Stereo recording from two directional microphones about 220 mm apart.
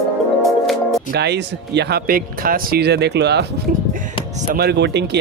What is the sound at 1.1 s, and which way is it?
Speech, 50° right (ahead or behind).